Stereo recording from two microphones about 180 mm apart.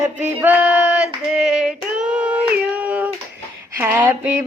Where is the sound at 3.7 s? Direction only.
10° right (ahead or behind).